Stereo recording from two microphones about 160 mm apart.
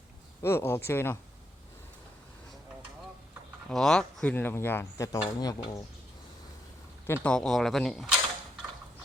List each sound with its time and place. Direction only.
0.4 s speech: 15° left (ahead or behind)
3.7 s speech: 5° left (ahead or behind); by 5.8 s 25° left (ahead or behind)
7.1 s speech: 5° left (ahead or behind)